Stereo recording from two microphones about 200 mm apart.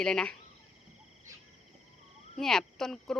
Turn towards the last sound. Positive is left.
turn(degrees=0)  # may be behind; listen again after turning